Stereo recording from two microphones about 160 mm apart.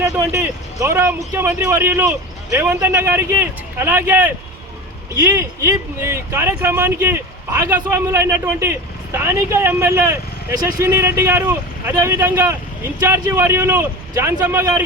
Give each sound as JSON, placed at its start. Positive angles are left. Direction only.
{"t": 0.3, "sound": "speech", "side_deg": -15}